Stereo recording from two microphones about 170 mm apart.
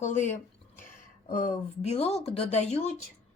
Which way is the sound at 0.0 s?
45° left (ahead or behind).